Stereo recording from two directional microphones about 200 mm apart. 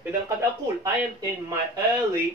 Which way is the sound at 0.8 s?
15° right (ahead or behind).